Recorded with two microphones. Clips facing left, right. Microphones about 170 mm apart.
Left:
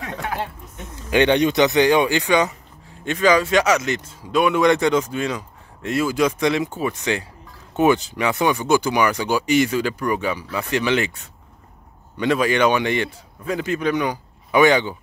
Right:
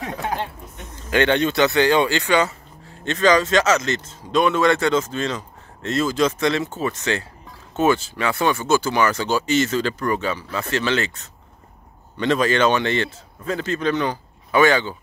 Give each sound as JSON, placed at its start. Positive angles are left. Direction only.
{"t": 1.1, "sound": "speech", "side_deg": 15}